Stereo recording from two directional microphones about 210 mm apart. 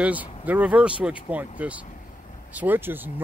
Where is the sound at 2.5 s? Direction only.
10° right (ahead or behind).